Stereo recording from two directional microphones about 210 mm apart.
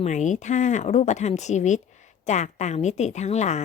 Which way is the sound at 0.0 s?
35° left (ahead or behind).